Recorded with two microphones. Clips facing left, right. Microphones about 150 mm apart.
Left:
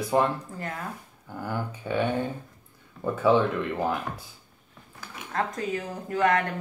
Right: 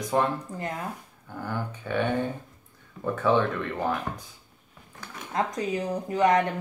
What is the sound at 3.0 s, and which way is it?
Speech, 10° left (ahead or behind).